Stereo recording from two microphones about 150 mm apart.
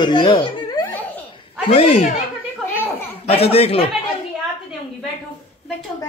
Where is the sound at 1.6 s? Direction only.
45° left (ahead or behind).